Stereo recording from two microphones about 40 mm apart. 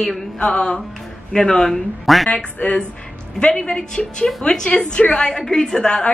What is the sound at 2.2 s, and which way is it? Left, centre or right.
Speech, left.